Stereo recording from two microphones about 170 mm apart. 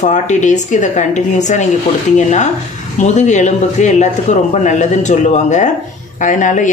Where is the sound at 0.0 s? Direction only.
45° left (ahead or behind).